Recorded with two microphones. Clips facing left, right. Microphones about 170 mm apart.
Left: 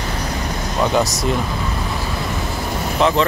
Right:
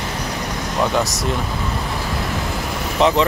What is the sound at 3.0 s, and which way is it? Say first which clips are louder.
Speech: right 1 dB; 15° right (ahead or behind).